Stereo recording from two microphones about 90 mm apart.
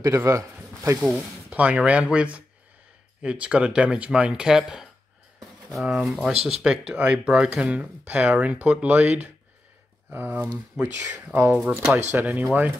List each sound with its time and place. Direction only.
0.0 s speech: 30° right (ahead or behind)
1.5 s speech: 15° right (ahead or behind)